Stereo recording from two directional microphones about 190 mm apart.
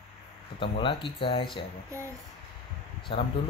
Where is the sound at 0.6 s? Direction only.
25° left (ahead or behind).